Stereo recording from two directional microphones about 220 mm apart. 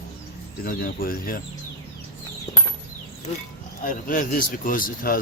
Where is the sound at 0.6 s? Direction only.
40° left (ahead or behind).